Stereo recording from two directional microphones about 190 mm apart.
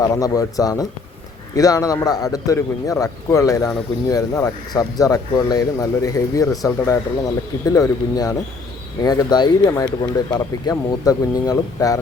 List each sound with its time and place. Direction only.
0.0 s a man's voice: 20° left (ahead or behind)